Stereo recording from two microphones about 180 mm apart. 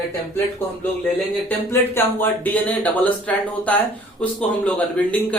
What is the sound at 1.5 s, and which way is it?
Speech, 10° left (ahead or behind).